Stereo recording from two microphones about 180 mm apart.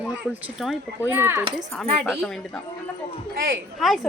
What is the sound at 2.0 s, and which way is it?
Speech, centre (ahead or behind).